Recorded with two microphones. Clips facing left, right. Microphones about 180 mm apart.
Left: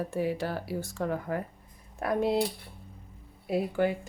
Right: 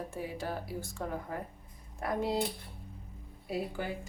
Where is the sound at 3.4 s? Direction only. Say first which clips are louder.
Left 8 dB; 60° left (ahead or behind).